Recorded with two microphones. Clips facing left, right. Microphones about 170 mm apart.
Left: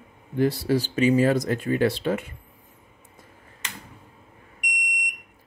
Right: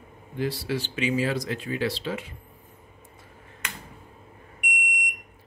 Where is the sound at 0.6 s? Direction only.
40° left (ahead or behind).